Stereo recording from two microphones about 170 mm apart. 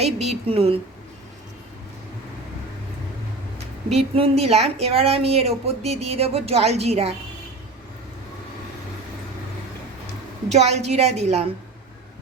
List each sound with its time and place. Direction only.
0.0 s a woman's voice: 40° right (ahead or behind)
3.9 s a woman's voice: 35° right (ahead or behind)
10.5 s a woman's voice: 40° right (ahead or behind)